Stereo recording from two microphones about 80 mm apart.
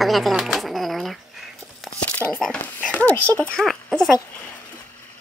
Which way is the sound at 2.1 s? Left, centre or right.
Left.